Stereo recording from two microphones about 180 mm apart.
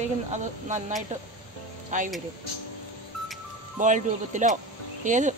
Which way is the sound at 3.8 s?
45° right (ahead or behind).